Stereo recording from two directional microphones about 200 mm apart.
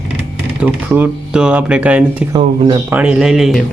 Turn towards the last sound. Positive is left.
turn(degrees=0)  # may be behind; listen again after turning